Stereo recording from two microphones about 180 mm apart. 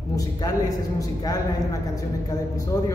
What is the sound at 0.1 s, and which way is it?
A man's voice, 20° left (ahead or behind).